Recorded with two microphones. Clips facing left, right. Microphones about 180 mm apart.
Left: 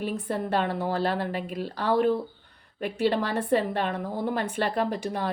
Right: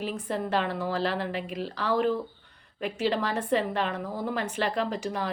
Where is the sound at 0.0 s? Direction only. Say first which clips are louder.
Left 2 dB; 55° left (ahead or behind).